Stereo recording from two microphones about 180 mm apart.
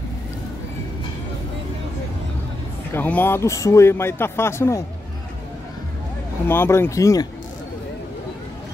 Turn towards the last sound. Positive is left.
turn(degrees=20)  # may be behind; listen again after turning